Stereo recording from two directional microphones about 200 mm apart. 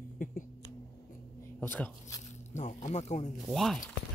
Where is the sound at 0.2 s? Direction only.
40° left (ahead or behind).